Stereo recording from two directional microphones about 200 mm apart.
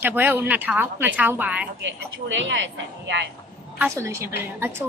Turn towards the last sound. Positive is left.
turn(degrees=-10)  # may be behind; listen again after turning